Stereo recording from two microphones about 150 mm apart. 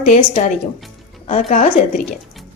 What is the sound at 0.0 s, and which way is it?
A woman's voice, 55° left (ahead or behind).